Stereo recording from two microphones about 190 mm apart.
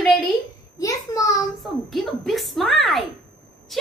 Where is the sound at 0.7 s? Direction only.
15° left (ahead or behind).